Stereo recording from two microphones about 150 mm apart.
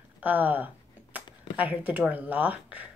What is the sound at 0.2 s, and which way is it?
Speech, 10° right (ahead or behind).